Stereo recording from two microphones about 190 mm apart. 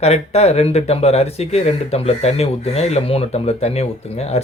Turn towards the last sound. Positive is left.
turn(degrees=35)  # may be behind; listen again after turning